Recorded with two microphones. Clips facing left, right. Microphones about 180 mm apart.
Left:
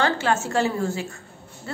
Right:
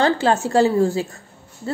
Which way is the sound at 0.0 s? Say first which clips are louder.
Right 5 dB; 35° right (ahead or behind).